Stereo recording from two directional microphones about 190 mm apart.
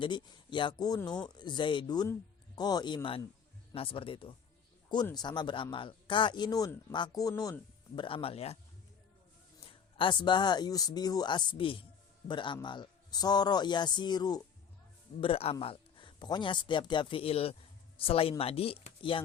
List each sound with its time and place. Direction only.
0.0 s speech: 25° left (ahead or behind)
10.0 s a man's voice: 25° left (ahead or behind)